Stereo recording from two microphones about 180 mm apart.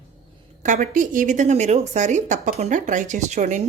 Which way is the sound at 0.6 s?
45° right (ahead or behind).